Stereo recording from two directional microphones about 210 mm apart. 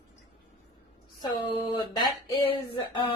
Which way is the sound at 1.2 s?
20° left (ahead or behind).